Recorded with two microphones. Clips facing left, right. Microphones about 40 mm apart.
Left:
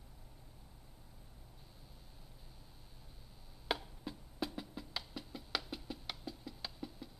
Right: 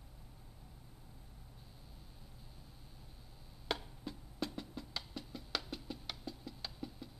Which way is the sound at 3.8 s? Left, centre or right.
Centre.